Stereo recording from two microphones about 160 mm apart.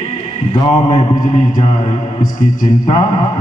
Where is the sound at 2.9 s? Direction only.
30° left (ahead or behind).